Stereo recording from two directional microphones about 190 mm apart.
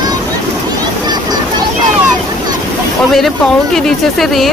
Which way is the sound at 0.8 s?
20° right (ahead or behind).